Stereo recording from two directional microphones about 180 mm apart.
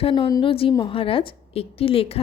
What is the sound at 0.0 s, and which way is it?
A woman's voice, 30° left (ahead or behind).